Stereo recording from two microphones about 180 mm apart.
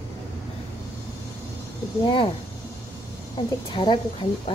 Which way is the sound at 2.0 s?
25° left (ahead or behind).